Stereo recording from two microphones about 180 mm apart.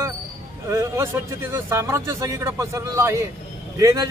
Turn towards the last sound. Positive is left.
turn(degrees=-20)  # may be behind; listen again after turning